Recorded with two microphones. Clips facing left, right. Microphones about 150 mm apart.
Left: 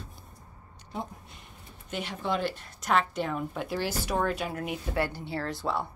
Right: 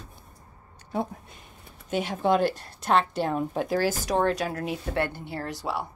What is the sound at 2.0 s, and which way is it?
A woman's voice, 50° right (ahead or behind).